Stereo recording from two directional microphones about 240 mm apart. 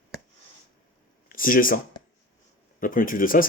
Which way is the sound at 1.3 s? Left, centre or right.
Left.